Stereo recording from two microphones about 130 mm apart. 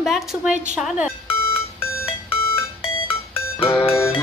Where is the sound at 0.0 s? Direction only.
5° right (ahead or behind).